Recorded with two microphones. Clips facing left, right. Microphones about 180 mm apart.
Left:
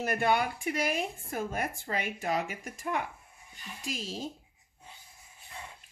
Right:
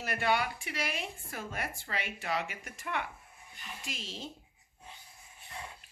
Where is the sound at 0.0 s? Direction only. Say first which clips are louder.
Left 3 dB; 45° left (ahead or behind).